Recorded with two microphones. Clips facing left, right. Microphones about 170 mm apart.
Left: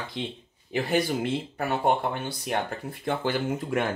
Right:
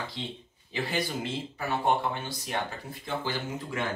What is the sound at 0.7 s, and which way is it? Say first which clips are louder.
Speech: left 6 dB; 55° left (ahead or behind).